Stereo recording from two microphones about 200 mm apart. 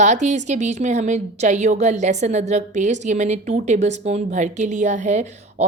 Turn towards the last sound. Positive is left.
turn(degrees=-35)  # may be behind; listen again after turning